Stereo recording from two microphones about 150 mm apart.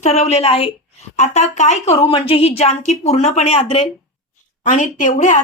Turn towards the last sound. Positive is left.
turn(degrees=55)  # may be behind; listen again after turning